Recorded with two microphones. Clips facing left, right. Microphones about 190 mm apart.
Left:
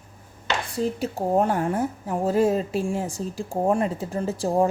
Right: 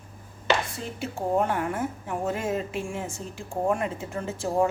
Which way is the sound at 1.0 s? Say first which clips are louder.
Left 1 dB; 35° left (ahead or behind).